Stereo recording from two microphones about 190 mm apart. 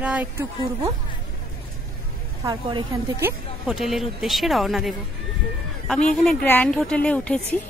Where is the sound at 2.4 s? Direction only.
20° right (ahead or behind).